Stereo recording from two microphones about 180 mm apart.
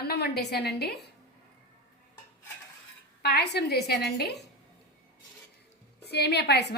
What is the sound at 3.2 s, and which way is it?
A woman's voice, 65° left (ahead or behind).